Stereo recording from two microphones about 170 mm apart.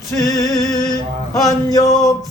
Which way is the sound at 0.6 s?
5° left (ahead or behind).